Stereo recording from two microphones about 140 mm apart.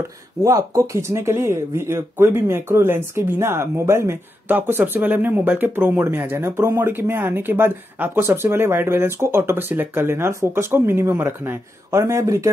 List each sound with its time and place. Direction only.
0.4 s speech: 25° right (ahead or behind)